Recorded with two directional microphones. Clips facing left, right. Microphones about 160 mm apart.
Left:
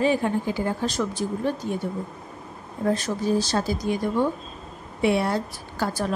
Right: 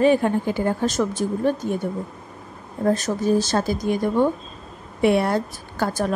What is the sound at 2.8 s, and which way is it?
A woman's voice, 45° right (ahead or behind).